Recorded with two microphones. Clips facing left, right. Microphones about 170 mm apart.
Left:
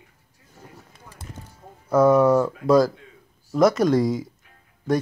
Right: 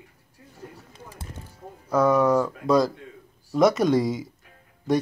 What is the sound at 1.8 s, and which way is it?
Speech, 5° left (ahead or behind).